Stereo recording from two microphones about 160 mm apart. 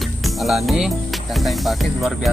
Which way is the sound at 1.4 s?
Centre (ahead or behind).